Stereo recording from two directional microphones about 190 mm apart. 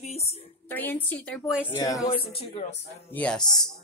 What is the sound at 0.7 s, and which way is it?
Speech, 10° left (ahead or behind).